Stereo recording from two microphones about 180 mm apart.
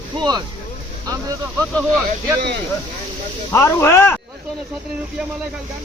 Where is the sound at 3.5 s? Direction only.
15° left (ahead or behind).